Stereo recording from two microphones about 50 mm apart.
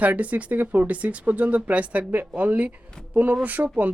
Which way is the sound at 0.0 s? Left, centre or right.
Right.